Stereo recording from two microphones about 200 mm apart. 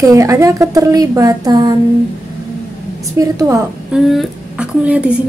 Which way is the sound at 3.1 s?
15° right (ahead or behind).